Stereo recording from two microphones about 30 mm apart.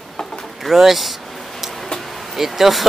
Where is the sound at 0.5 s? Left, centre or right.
Centre.